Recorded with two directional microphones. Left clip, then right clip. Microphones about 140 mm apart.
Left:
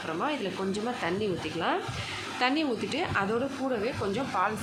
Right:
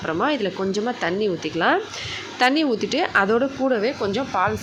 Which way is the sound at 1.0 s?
40° right (ahead or behind).